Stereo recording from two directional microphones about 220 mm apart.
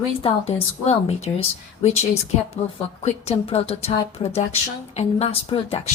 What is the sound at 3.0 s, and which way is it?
A woman's voice, 25° left (ahead or behind).